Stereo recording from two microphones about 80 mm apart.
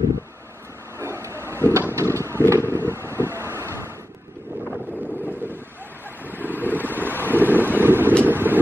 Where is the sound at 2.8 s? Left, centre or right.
Right.